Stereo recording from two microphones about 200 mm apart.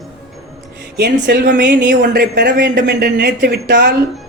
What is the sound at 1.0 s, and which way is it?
A woman's voice, 50° right (ahead or behind).